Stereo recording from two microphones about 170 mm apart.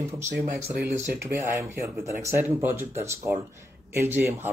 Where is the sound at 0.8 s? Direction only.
15° right (ahead or behind).